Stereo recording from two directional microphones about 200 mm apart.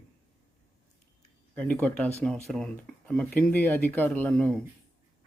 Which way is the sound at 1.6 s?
5° left (ahead or behind).